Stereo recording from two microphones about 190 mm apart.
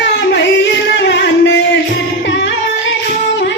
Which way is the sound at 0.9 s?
65° left (ahead or behind).